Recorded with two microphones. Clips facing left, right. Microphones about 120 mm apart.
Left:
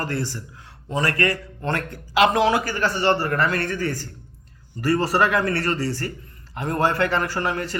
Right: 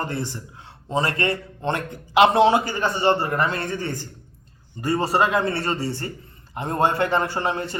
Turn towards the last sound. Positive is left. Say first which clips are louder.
# even
turn(degrees=-25)  # may be behind; listen again after turning